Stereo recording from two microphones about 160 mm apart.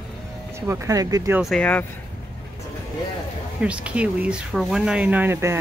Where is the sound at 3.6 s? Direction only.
5° right (ahead or behind).